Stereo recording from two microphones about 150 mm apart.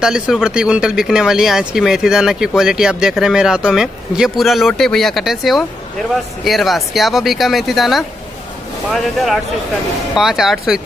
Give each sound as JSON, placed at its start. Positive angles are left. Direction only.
{"t": 0.0, "sound": "speech", "side_deg": -5}